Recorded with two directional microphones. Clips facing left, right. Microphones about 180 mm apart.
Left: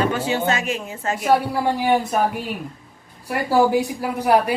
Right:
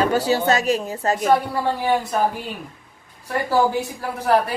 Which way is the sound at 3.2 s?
10° left (ahead or behind).